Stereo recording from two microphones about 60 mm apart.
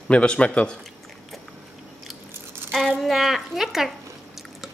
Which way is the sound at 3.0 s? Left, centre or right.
Centre.